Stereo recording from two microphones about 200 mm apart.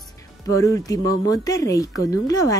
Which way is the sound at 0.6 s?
20° left (ahead or behind).